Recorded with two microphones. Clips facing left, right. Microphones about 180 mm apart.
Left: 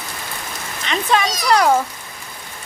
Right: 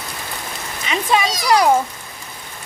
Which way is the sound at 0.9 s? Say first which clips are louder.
Even; 10° right (ahead or behind).